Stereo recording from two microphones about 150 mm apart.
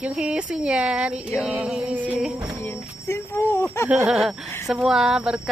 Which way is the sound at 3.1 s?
20° left (ahead or behind).